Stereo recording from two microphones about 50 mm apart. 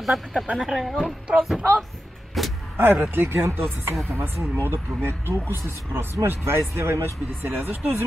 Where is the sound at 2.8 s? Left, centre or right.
Right.